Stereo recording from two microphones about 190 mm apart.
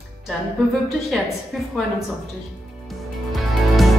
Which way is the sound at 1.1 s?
Centre (ahead or behind).